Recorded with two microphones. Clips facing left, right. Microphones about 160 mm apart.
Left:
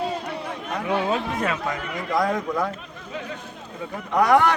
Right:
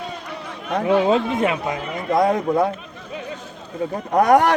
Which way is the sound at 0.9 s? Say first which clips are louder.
Right 7 dB; 20° right (ahead or behind).